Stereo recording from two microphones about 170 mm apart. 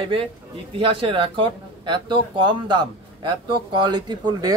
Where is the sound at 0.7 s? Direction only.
30° right (ahead or behind).